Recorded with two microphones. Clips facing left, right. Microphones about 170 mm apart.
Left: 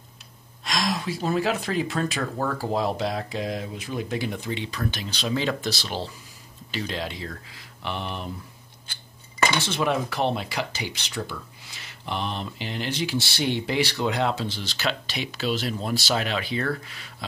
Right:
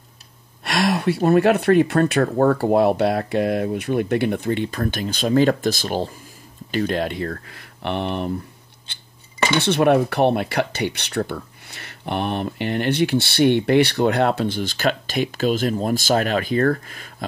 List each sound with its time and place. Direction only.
0.7 s speech: 65° right (ahead or behind)
9.6 s speech: 60° right (ahead or behind)